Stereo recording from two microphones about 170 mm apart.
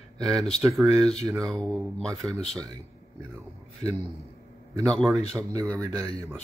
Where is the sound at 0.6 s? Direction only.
Centre (ahead or behind).